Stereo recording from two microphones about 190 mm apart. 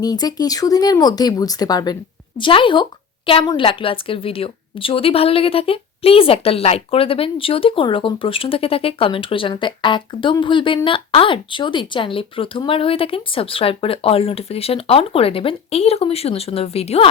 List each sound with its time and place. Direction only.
0.0 s a woman's voice: 20° left (ahead or behind)